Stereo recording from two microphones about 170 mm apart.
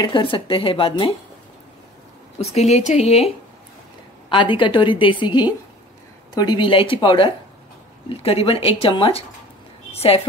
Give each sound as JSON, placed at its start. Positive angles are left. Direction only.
{"t": 0.0, "sound": "speech", "side_deg": 30}
{"t": 2.3, "sound": "speech", "side_deg": 40}
{"t": 4.3, "sound": "a woman's voice", "side_deg": 30}